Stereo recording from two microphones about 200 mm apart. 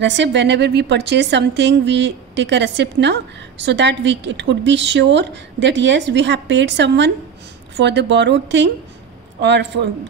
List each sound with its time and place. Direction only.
0.0 s a woman's voice: 65° right (ahead or behind)